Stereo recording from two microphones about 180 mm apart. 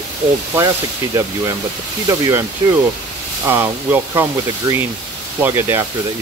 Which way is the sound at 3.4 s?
10° right (ahead or behind).